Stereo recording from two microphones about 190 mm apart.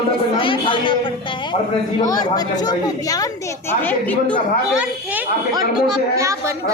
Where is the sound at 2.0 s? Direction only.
20° left (ahead or behind).